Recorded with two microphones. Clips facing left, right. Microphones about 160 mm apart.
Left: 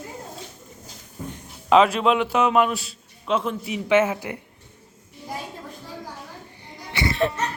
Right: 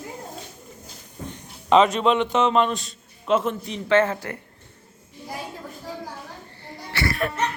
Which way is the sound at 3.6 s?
10° left (ahead or behind).